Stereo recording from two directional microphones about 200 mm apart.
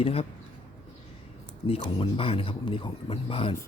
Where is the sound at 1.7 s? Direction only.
25° left (ahead or behind).